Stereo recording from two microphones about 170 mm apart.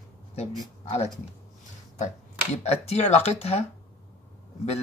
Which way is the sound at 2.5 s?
40° left (ahead or behind).